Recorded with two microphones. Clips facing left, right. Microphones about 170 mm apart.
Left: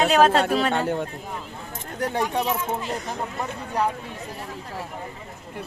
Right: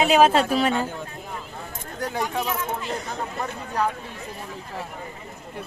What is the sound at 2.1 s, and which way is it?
Speech, 20° left (ahead or behind).